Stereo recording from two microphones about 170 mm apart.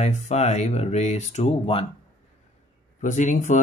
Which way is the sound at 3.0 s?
45° left (ahead or behind).